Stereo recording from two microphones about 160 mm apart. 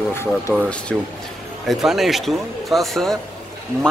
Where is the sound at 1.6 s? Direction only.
Centre (ahead or behind).